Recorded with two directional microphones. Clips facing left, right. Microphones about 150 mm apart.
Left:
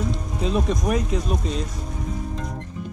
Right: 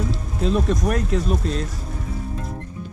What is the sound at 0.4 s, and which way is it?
Speech, centre (ahead or behind).